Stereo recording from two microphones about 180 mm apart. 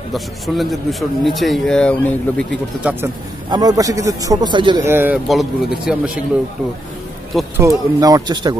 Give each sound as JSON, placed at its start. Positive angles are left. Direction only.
{"t": 0.1, "sound": "a man's voice", "side_deg": 0}
{"t": 2.8, "sound": "speech", "side_deg": -10}
{"t": 3.4, "sound": "speech", "side_deg": -20}
{"t": 4.8, "sound": "speech", "side_deg": -10}
{"t": 5.3, "sound": "a man's voice", "side_deg": 0}
{"t": 7.5, "sound": "speech", "side_deg": -20}